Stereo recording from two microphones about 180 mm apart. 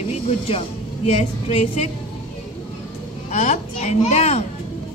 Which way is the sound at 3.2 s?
40° left (ahead or behind).